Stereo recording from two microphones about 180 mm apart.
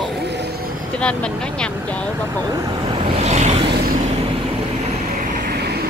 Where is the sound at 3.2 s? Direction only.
40° right (ahead or behind).